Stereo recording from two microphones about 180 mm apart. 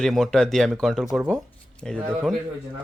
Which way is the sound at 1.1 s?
10° right (ahead or behind).